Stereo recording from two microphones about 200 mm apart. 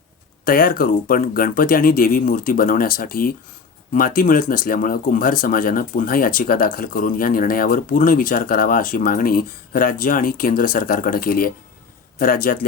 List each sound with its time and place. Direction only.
0.4 s speech: 45° left (ahead or behind)